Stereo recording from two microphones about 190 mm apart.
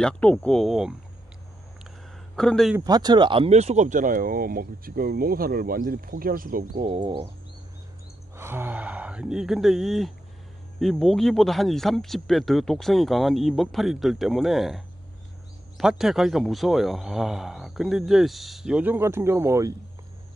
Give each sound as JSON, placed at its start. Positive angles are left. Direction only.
{"t": 0.0, "sound": "speech", "side_deg": 5}
{"t": 2.3, "sound": "speech", "side_deg": 5}
{"t": 2.8, "sound": "speech", "side_deg": -20}
{"t": 6.7, "sound": "speech", "side_deg": -30}
{"t": 8.4, "sound": "speech", "side_deg": -10}
{"t": 15.8, "sound": "speech", "side_deg": 0}